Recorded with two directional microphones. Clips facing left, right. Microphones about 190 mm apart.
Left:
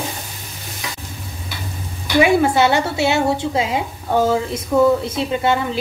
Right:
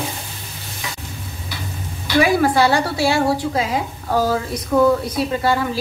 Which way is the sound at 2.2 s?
25° left (ahead or behind).